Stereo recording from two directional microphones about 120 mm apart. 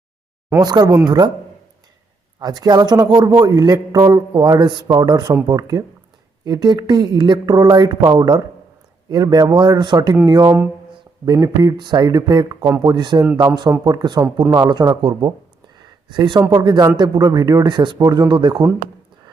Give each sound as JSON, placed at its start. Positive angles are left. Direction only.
{"t": 0.6, "sound": "a man's voice", "side_deg": -35}
{"t": 2.4, "sound": "a man's voice", "side_deg": -35}
{"t": 12.9, "sound": "a man's voice", "side_deg": -35}
{"t": 15.7, "sound": "a sound", "side_deg": -35}
{"t": 16.5, "sound": "a man's voice", "side_deg": -35}